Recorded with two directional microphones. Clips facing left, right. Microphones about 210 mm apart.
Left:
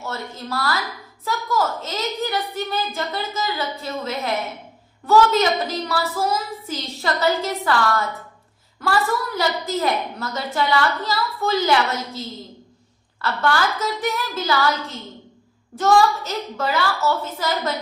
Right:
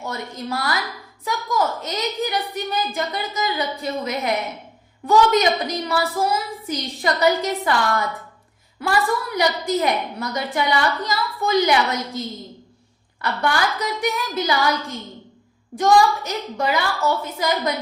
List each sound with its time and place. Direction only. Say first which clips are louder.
0.0 s a woman's voice: right 1 dB; 15° right (ahead or behind)
13.2 s a woman's voice: left 1 dB; 15° right (ahead or behind)